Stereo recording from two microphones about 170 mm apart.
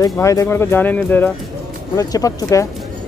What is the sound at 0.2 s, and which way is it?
Speech, 20° left (ahead or behind).